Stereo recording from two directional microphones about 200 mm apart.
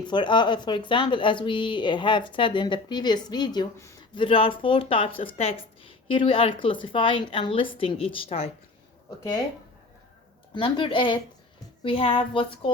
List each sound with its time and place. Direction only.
0.0 s speech: 20° left (ahead or behind)
10.5 s speech: 25° left (ahead or behind)